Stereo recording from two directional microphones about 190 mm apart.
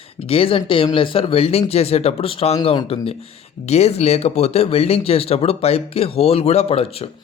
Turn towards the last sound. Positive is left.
turn(degrees=30)  # may be behind; listen again after turning